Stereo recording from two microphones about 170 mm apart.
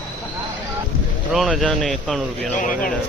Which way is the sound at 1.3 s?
Centre (ahead or behind).